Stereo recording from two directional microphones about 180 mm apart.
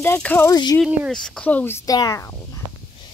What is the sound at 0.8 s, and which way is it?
Speech, 5° right (ahead or behind).